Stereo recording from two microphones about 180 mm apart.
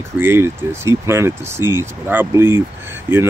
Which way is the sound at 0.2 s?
15° right (ahead or behind).